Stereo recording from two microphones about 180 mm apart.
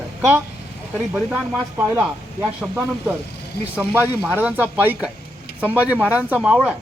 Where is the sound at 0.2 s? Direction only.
10° right (ahead or behind).